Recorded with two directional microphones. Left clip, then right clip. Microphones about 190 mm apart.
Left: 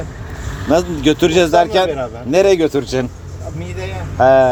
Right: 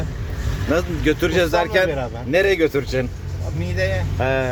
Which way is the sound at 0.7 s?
30° left (ahead or behind).